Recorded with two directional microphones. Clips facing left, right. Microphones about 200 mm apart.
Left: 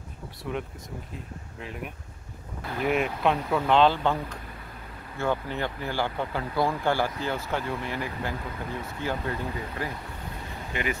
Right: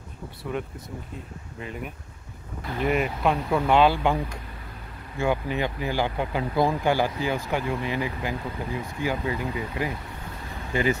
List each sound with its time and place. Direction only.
0.4 s speech: centre (ahead or behind)
10.7 s speech: 30° right (ahead or behind)